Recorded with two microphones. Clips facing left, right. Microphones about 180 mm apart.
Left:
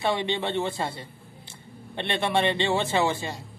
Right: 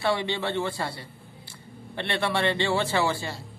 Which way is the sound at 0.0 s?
20° left (ahead or behind).